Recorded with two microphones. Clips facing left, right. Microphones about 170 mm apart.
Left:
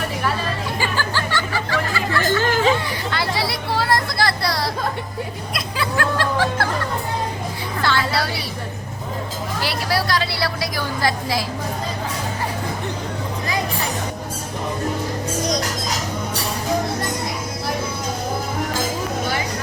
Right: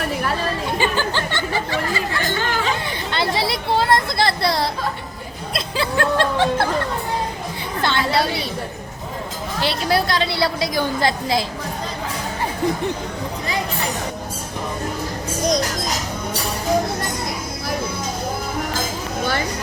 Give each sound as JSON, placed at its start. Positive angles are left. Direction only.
{"t": 0.8, "sound": "a woman's voice", "side_deg": -20}
{"t": 2.4, "sound": "speech", "side_deg": 40}
{"t": 3.1, "sound": "a woman's voice", "side_deg": -25}
{"t": 7.8, "sound": "a woman's voice", "side_deg": -20}
{"t": 9.6, "sound": "a woman's voice", "side_deg": -25}